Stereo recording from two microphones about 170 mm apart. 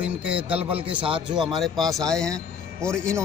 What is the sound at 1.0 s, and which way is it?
Speech, 30° right (ahead or behind).